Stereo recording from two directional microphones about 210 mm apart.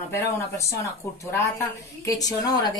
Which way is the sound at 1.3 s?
15° left (ahead or behind).